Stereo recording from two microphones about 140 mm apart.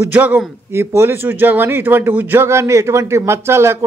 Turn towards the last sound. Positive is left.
turn(degrees=-20)  # may be behind; listen again after turning